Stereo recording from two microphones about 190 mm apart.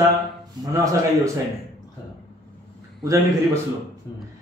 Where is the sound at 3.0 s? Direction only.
15° right (ahead or behind).